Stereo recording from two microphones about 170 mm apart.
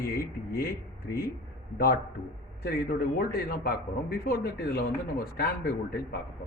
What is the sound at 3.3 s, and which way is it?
Speech, 60° left (ahead or behind).